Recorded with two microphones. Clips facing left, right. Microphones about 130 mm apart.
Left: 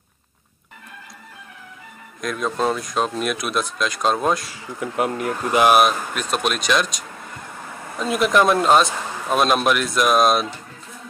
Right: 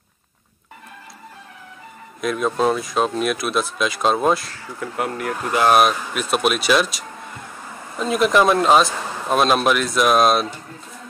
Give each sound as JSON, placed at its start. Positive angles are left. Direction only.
{"t": 2.2, "sound": "speech", "side_deg": -5}
{"t": 4.5, "sound": "speech", "side_deg": 15}
{"t": 5.7, "sound": "speech", "side_deg": 0}